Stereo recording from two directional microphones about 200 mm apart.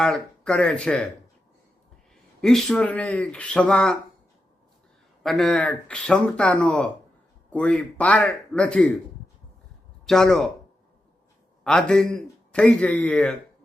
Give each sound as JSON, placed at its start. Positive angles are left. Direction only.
{"t": 0.0, "sound": "speech", "side_deg": 5}
{"t": 2.4, "sound": "speech", "side_deg": 0}
{"t": 5.2, "sound": "speech", "side_deg": 0}
{"t": 10.1, "sound": "speech", "side_deg": 0}
{"t": 11.6, "sound": "speech", "side_deg": 5}